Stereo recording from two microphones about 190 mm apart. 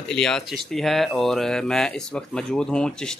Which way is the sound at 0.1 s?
5° left (ahead or behind).